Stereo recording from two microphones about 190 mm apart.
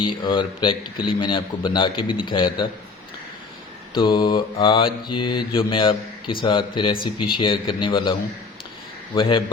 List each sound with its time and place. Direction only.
0.0 s a man's voice: 25° left (ahead or behind)
3.9 s a man's voice: 25° left (ahead or behind)
9.1 s a man's voice: 25° left (ahead or behind)